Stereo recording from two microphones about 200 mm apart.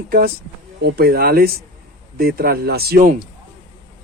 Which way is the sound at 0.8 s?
50° right (ahead or behind).